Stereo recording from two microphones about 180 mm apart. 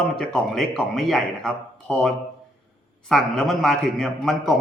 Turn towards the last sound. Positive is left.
turn(degrees=0)  # may be behind; listen again after turning